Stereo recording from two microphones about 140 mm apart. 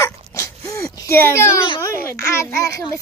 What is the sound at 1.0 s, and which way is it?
Speech, 20° left (ahead or behind).